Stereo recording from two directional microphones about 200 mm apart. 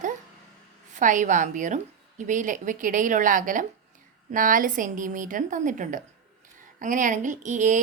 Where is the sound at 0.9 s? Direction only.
40° right (ahead or behind).